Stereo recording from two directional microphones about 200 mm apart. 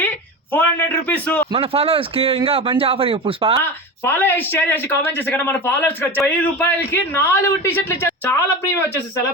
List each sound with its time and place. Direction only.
0.5 s speech: 10° left (ahead or behind)
1.5 s speech: 30° right (ahead or behind)
3.6 s speech: 10° left (ahead or behind)